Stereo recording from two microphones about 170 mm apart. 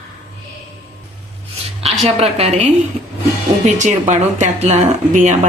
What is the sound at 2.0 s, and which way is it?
Speech, 35° right (ahead or behind).